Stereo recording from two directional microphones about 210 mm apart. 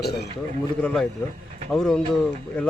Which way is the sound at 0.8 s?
5° left (ahead or behind).